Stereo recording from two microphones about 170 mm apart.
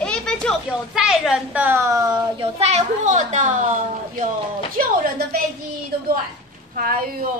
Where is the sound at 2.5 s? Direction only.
40° right (ahead or behind).